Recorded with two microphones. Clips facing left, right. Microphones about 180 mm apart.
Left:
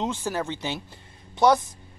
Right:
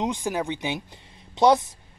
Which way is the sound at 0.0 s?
15° right (ahead or behind).